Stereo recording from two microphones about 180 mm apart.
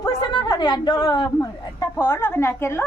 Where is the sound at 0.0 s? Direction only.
25° left (ahead or behind).